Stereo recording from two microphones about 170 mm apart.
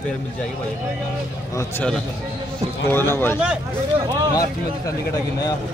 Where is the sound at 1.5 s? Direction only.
15° left (ahead or behind).